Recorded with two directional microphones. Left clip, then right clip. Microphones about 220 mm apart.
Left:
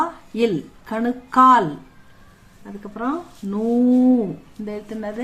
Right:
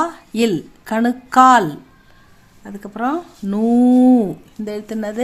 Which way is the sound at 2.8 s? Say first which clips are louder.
Right 5 dB; 50° right (ahead or behind).